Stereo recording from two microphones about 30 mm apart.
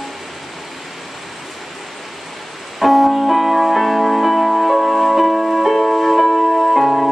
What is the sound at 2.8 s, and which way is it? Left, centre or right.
Music, centre.